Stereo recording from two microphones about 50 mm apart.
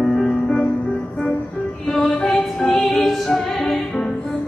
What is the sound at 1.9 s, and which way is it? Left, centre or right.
Music, left.